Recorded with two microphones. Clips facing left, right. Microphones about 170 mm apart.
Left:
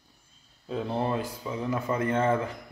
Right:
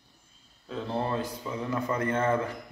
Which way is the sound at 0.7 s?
15° left (ahead or behind).